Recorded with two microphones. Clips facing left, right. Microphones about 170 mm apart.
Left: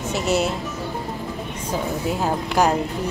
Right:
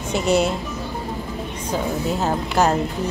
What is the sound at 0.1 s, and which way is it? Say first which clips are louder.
Speech: right 3 dB; 5° left (ahead or behind).